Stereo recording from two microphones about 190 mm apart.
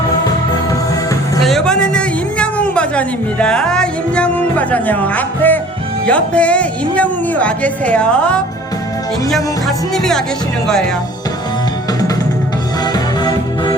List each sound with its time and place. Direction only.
1.5 s a sound: centre (ahead or behind)
6.1 s speech: 5° left (ahead or behind)
9.3 s music: centre (ahead or behind)
12.9 s music: 20° left (ahead or behind)